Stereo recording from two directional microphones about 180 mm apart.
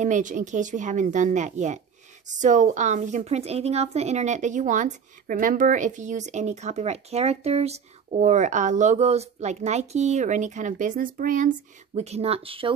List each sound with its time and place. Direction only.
0.0 s a woman's voice: 45° right (ahead or behind)